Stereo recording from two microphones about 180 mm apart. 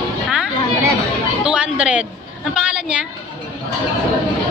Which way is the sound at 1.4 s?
5° right (ahead or behind).